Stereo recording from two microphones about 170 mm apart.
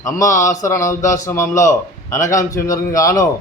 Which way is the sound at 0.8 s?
15° left (ahead or behind).